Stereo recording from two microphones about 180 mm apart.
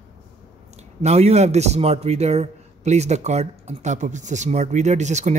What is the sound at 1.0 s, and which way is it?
A man's voice, 35° right (ahead or behind).